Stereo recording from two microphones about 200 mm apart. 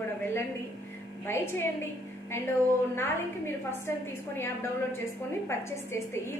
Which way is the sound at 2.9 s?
10° left (ahead or behind).